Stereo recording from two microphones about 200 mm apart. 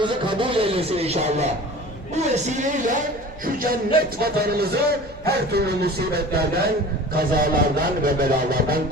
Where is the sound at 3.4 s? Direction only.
45° right (ahead or behind).